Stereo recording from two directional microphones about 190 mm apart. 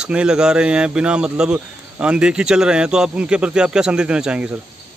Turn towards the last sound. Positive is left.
turn(degrees=-5)  # may be behind; listen again after turning